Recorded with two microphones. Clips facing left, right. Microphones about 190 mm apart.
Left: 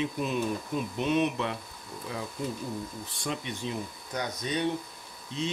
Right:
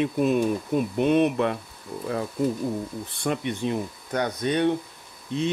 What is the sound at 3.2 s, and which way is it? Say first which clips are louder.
Speech: right 8 dB; 60° right (ahead or behind).